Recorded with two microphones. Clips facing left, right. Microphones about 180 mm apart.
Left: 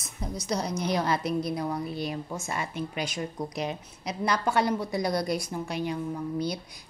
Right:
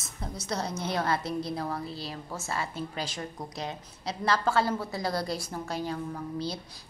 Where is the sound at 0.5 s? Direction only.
15° left (ahead or behind).